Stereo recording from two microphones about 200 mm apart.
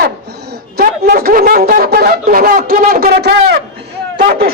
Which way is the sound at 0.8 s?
50° right (ahead or behind).